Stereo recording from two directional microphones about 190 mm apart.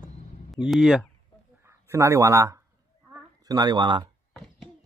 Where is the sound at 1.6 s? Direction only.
15° right (ahead or behind).